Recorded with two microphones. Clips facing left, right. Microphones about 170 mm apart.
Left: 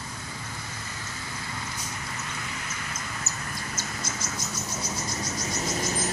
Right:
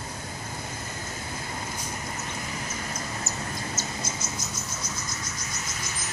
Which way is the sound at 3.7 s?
25° right (ahead or behind).